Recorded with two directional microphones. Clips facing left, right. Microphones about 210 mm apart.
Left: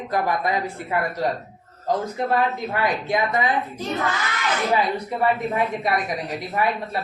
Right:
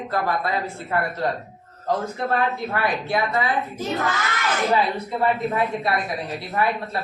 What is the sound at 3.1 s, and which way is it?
Speech, 20° left (ahead or behind).